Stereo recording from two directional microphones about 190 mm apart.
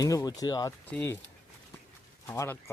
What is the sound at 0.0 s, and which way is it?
Speech, 20° left (ahead or behind).